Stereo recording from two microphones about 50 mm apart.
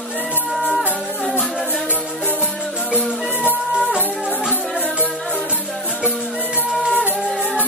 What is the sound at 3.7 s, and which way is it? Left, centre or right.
Music, right.